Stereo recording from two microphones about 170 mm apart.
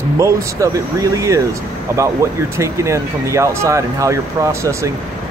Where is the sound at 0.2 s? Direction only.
20° right (ahead or behind).